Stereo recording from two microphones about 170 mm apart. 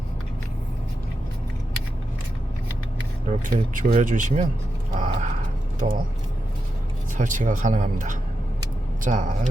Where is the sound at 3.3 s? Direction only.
50° right (ahead or behind).